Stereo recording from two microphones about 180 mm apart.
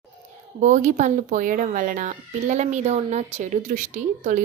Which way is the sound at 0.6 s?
45° right (ahead or behind).